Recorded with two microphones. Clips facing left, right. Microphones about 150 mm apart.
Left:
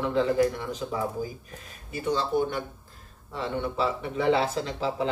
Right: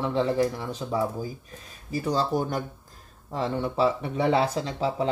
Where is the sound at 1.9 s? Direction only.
35° right (ahead or behind).